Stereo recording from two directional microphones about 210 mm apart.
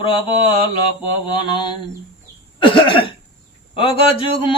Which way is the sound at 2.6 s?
25° left (ahead or behind).